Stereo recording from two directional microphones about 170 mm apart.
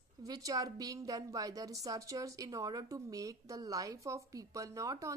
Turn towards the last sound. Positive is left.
turn(degrees=-20)  # may be behind; listen again after turning